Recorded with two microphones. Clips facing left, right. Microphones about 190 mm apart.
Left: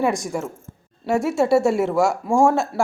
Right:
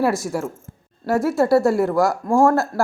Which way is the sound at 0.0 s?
5° right (ahead or behind).